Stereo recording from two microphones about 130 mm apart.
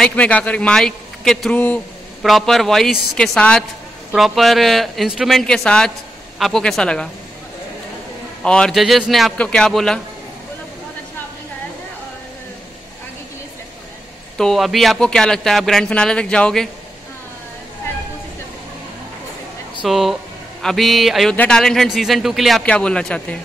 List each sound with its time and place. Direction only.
0.0 s a man's voice: 10° left (ahead or behind)
8.4 s a man's voice: 5° left (ahead or behind)
14.3 s a man's voice: 5° left (ahead or behind)
19.8 s a man's voice: centre (ahead or behind)